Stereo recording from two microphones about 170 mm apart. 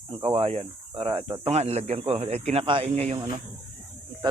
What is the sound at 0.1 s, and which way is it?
Speech, 30° right (ahead or behind).